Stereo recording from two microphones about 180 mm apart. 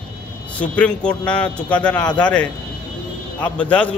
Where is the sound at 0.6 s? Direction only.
5° left (ahead or behind).